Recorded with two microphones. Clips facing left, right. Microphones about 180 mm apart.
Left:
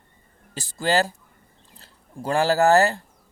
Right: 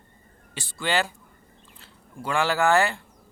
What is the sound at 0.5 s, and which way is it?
Speech, 40° left (ahead or behind).